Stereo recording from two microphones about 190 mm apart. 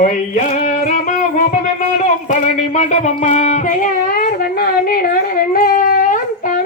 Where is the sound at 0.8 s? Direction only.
45° left (ahead or behind).